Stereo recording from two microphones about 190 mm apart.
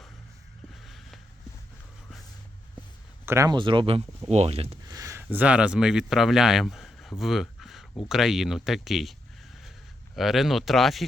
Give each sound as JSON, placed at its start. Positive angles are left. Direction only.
{"t": 0.9, "sound": "vehicle", "side_deg": 0}
{"t": 3.2, "sound": "speech", "side_deg": -15}
{"t": 4.9, "sound": "speech", "side_deg": -15}
{"t": 10.2, "sound": "speech", "side_deg": 0}